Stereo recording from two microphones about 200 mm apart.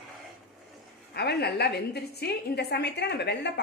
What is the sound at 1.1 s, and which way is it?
Speech, 55° left (ahead or behind).